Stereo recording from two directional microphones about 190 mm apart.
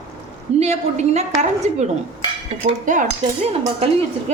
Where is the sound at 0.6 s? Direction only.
35° right (ahead or behind).